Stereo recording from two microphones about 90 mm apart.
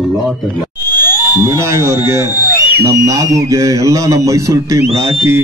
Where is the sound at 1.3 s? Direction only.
30° right (ahead or behind).